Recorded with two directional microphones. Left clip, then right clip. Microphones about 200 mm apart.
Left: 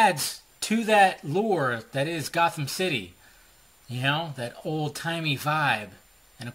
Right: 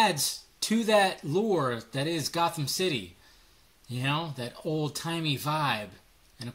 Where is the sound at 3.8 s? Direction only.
20° left (ahead or behind).